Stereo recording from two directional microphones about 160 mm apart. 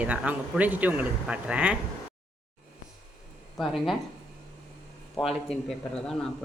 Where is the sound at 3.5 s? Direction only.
Centre (ahead or behind).